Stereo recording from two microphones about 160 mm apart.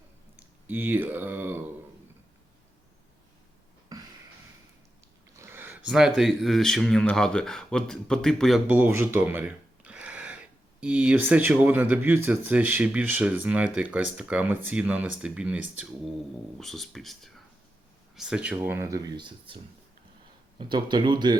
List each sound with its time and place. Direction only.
0.7 s speech: 10° right (ahead or behind)
5.4 s speech: 15° right (ahead or behind)
8.6 s a sound: 10° right (ahead or behind)
10.8 s speech: 5° right (ahead or behind); by 19.5 s 30° right (ahead or behind)
20.6 s speech: 30° right (ahead or behind)